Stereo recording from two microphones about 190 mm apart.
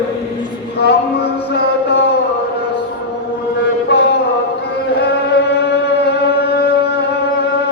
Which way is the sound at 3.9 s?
60° left (ahead or behind).